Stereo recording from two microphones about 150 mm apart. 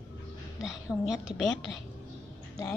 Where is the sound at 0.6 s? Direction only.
Centre (ahead or behind).